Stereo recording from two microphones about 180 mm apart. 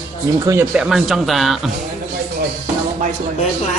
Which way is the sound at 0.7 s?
5° right (ahead or behind).